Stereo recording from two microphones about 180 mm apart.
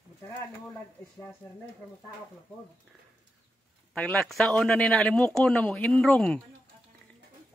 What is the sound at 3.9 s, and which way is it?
Speech, 5° left (ahead or behind).